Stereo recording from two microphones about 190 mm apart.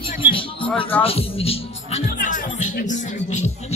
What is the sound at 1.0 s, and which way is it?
Music, 30° left (ahead or behind).